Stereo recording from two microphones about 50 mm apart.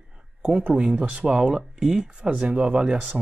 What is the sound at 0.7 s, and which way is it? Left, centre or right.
Speech, right.